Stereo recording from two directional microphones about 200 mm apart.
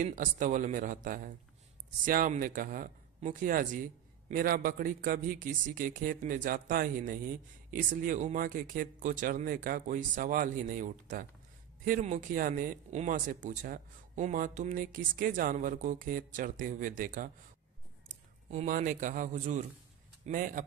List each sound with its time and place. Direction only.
0.0 s a man's voice: 40° right (ahead or behind)